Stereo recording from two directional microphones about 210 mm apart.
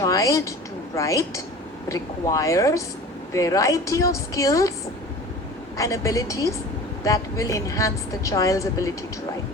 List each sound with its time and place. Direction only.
0.0 s a sound: 15° left (ahead or behind)
0.9 s a woman's voice: 15° left (ahead or behind)
5.7 s a woman's voice: 15° left (ahead or behind)